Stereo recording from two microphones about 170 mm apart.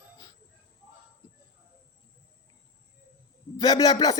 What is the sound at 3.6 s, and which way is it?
Speech, 25° left (ahead or behind).